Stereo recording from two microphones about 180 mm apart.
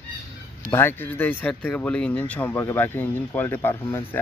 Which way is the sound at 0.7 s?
10° left (ahead or behind).